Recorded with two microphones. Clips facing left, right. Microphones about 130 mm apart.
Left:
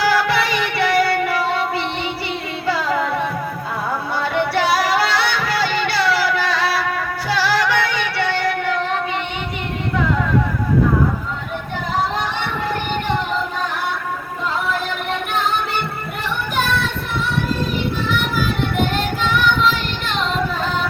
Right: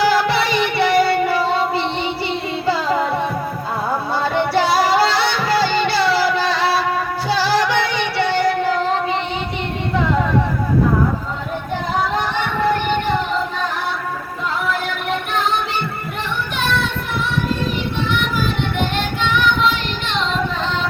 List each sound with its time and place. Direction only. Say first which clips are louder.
0.0 s music: right 1 dB; 25° right (ahead or behind)
2.6 s carnatic music: right 1 dB; 25° right (ahead or behind)
4.1 s music: right 2 dB; 30° right (ahead or behind)
18.9 s child singing: even; centre (ahead or behind)